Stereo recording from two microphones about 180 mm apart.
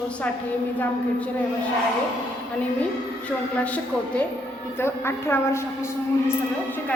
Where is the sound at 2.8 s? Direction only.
5° left (ahead or behind).